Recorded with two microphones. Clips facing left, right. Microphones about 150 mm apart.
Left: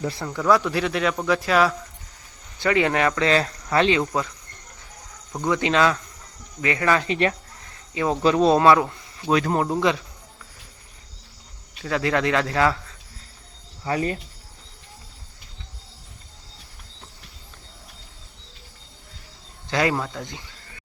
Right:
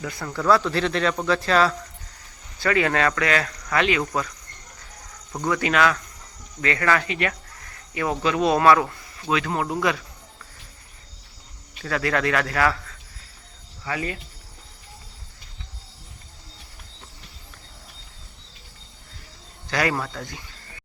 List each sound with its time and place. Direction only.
0.0 s cricket: 30° left (ahead or behind)
0.3 s speech: 15° left (ahead or behind)
2.6 s cricket: 20° left (ahead or behind)
5.5 s cricket: 20° left (ahead or behind)
7.1 s speech: 30° left (ahead or behind)
7.6 s a sound: 20° left (ahead or behind)
8.2 s cricket: 35° left (ahead or behind)
9.3 s speech: 40° left (ahead or behind)
9.7 s cricket: 20° left (ahead or behind)
11.9 s cricket: 20° left (ahead or behind)
13.8 s speech: 40° left (ahead or behind)
19.7 s cricket: 20° left (ahead or behind)